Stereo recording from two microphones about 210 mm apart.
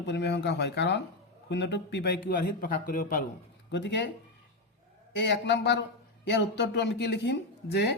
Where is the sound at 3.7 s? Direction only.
55° left (ahead or behind).